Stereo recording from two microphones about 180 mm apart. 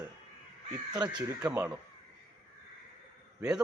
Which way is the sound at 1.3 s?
10° right (ahead or behind).